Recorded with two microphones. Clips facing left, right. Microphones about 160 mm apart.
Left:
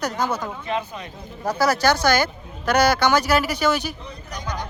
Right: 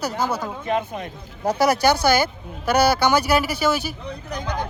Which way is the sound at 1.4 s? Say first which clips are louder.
Right 2 dB; 20° right (ahead or behind).